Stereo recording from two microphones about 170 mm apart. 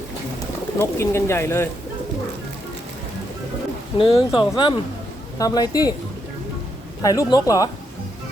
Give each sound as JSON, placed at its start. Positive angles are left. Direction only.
{"t": 0.8, "sound": "speech", "side_deg": 15}
{"t": 3.9, "sound": "speech", "side_deg": 30}
{"t": 7.0, "sound": "speech", "side_deg": 20}